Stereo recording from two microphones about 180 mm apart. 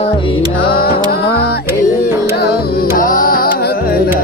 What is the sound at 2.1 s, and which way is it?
Music, 15° right (ahead or behind).